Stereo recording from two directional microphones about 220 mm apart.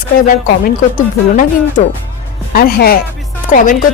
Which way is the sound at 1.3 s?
35° left (ahead or behind).